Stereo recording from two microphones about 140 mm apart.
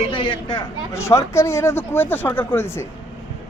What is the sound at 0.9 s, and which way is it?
Speech, 20° left (ahead or behind).